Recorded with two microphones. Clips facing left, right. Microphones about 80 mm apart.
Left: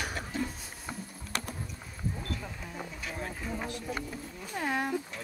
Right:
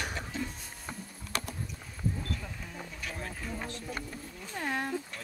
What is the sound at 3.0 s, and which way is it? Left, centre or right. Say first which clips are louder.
Wild animals: even; centre.